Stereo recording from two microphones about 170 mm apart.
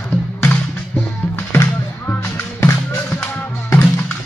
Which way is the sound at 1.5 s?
15° left (ahead or behind).